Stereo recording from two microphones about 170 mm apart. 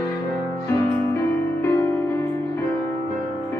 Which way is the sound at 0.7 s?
15° left (ahead or behind).